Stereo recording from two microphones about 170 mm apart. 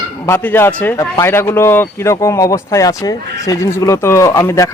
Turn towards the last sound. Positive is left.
turn(degrees=15)  # may be behind; listen again after turning